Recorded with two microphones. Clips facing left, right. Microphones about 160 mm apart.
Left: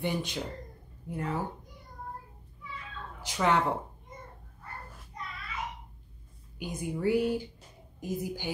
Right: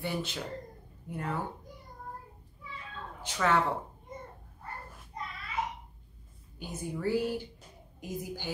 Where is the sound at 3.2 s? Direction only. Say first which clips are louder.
Left 1 dB; 15° left (ahead or behind).